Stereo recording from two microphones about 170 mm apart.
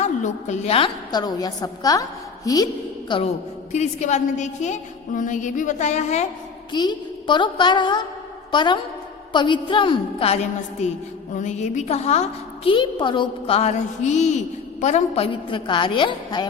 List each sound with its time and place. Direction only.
0.0 s a woman's voice: 40° left (ahead or behind)
1.1 s a woman's voice: 20° left (ahead or behind)
3.7 s a woman's voice: 45° left (ahead or behind)
6.7 s a woman's voice: 25° left (ahead or behind)